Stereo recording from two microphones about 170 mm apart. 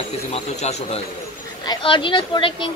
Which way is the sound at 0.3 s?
40° left (ahead or behind).